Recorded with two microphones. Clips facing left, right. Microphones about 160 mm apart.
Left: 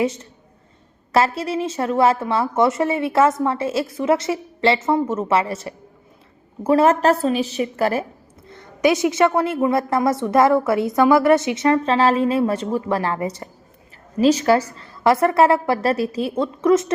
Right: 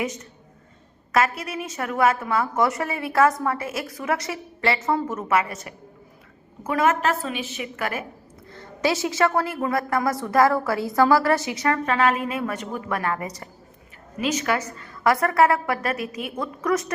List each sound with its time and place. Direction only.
0.0 s a woman's voice: 30° left (ahead or behind)
8.4 s a woman's voice: 20° left (ahead or behind)